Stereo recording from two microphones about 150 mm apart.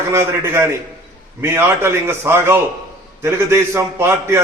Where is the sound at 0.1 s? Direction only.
15° right (ahead or behind).